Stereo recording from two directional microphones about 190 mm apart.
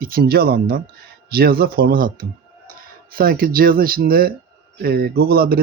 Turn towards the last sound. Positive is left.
turn(degrees=-50)  # may be behind; listen again after turning